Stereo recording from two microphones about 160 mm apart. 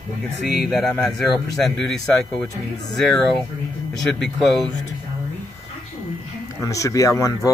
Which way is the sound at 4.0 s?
Centre (ahead or behind).